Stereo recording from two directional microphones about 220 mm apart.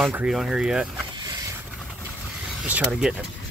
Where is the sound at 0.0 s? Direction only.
5° right (ahead or behind).